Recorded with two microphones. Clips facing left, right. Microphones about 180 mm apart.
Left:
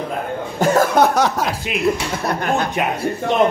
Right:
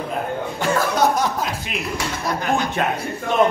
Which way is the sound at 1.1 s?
75° left (ahead or behind).